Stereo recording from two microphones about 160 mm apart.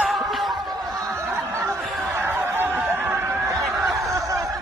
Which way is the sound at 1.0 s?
15° right (ahead or behind).